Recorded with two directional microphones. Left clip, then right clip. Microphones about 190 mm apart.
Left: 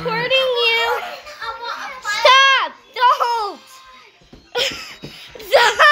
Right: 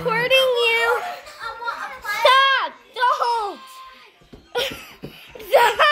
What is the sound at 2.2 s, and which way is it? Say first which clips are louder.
Music: left 4 dB; 10° left (ahead or behind).